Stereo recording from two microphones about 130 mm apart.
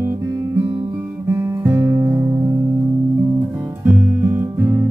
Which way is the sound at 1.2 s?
20° right (ahead or behind).